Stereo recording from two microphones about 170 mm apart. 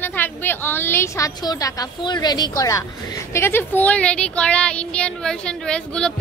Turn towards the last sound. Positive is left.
turn(degrees=5)  # may be behind; listen again after turning